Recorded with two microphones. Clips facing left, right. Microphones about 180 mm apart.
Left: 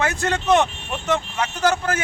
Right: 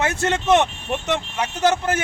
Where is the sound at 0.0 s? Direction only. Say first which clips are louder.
Right 1 dB; 25° right (ahead or behind).